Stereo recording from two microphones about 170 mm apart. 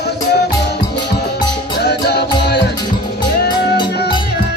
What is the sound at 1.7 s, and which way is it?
Music, 75° left (ahead or behind).